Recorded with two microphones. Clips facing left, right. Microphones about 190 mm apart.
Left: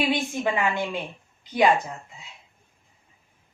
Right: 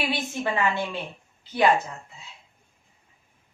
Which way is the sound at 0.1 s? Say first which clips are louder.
Left 3 dB; 15° left (ahead or behind).